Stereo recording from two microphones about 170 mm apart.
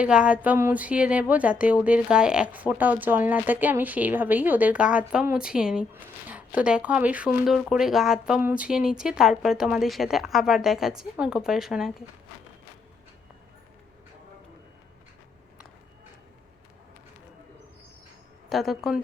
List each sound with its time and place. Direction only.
0.0 s speech: 5° right (ahead or behind)
18.4 s a woman's voice: centre (ahead or behind)